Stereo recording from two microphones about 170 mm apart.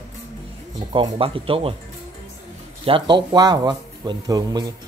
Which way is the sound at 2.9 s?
30° right (ahead or behind).